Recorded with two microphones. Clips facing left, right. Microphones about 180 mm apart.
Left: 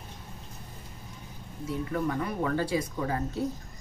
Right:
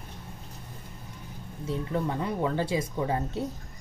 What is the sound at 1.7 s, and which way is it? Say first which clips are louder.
Speech: even; 25° right (ahead or behind).